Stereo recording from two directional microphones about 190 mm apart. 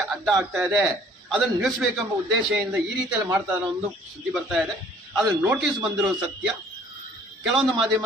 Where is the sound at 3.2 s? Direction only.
20° right (ahead or behind).